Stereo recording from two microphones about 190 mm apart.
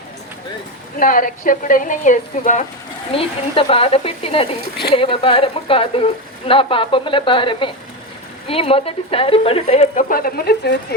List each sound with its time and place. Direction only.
0.9 s a woman's voice: 45° left (ahead or behind)
3.1 s speech: 30° left (ahead or behind); by 10.8 s 55° left (ahead or behind)